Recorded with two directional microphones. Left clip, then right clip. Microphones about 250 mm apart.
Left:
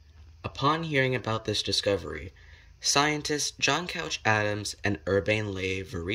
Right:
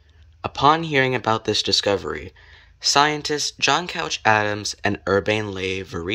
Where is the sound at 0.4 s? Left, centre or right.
Centre.